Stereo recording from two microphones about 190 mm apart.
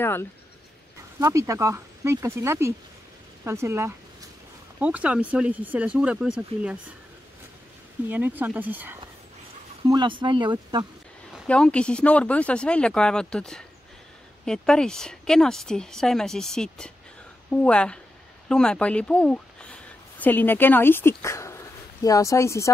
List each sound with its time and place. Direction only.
0.0 s speech: 10° left (ahead or behind)
1.2 s speech: 15° right (ahead or behind)
8.1 s speech: 10° right (ahead or behind)
9.8 s speech: 25° right (ahead or behind)
11.3 s speech: 5° left (ahead or behind)